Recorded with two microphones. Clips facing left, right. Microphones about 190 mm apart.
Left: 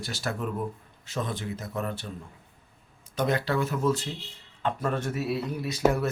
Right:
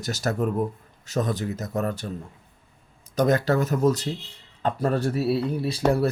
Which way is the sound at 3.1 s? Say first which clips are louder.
Right 5 dB; 45° right (ahead or behind).